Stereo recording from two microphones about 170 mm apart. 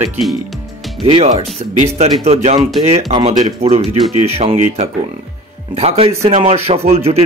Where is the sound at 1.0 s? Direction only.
35° right (ahead or behind).